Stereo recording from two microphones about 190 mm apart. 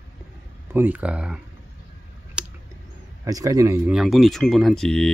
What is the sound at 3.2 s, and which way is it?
Speech, 20° right (ahead or behind).